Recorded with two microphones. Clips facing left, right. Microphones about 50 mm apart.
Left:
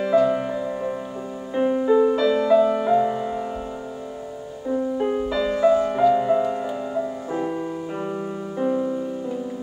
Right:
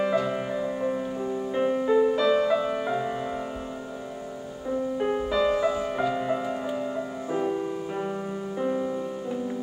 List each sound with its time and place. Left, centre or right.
0.0 s music: centre
4.9 s music: centre
8.5 s music: centre